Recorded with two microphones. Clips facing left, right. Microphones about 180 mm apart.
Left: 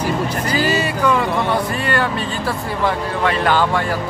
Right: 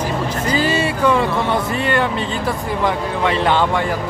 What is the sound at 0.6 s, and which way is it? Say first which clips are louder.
Music: even; 25° right (ahead or behind).